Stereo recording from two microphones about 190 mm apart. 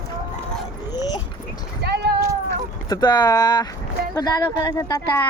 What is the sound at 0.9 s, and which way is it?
Dog, 20° left (ahead or behind).